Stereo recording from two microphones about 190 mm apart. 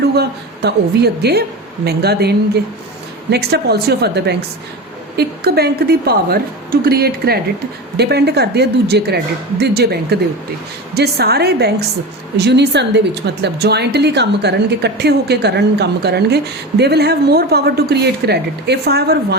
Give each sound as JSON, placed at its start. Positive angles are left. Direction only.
{"t": 0.0, "sound": "speech", "side_deg": -60}